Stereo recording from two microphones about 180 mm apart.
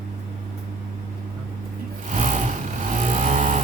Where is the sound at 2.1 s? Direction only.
45° right (ahead or behind).